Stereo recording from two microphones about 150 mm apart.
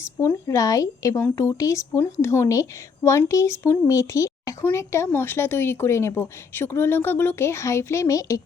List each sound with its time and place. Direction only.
0.0 s speech: 15° left (ahead or behind)